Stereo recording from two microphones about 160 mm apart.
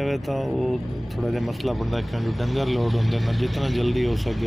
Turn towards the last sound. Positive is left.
turn(degrees=0)  # may be behind; listen again after turning